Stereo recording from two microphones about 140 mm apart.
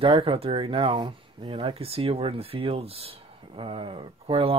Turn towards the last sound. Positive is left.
turn(degrees=-40)  # may be behind; listen again after turning